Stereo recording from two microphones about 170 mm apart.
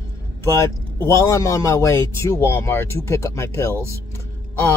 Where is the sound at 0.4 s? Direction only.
15° left (ahead or behind).